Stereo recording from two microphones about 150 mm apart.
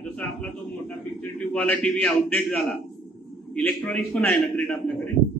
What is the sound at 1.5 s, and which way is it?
A man's voice, 10° left (ahead or behind).